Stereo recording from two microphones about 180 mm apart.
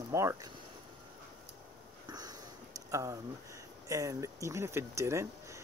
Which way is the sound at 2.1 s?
20° right (ahead or behind).